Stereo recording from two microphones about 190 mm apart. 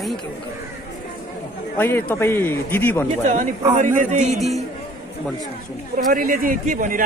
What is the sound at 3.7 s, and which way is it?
Speech, 40° right (ahead or behind).